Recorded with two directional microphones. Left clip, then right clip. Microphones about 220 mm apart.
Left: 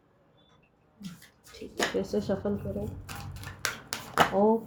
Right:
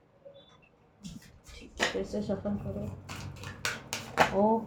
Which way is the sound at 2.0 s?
45° left (ahead or behind).